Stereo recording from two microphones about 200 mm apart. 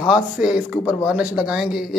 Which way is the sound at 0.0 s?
5° right (ahead or behind).